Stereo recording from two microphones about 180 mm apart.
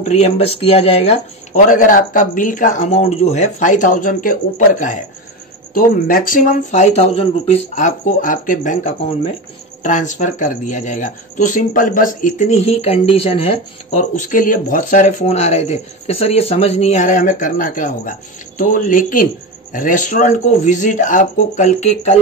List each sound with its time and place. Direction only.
0.1 s speech: 35° left (ahead or behind)
1.7 s speech: 50° left (ahead or behind)